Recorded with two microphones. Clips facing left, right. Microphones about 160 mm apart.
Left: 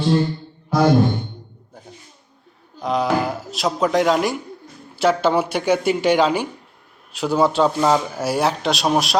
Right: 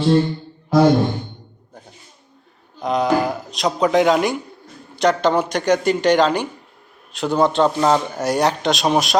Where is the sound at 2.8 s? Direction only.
Centre (ahead or behind).